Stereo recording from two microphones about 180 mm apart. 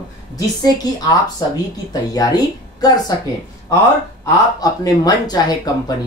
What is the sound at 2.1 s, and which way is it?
Speech, 20° left (ahead or behind).